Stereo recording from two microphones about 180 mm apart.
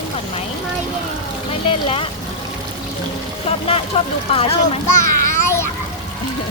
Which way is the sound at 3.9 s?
30° left (ahead or behind).